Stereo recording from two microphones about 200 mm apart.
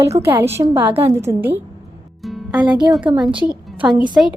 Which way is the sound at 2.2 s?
Centre (ahead or behind).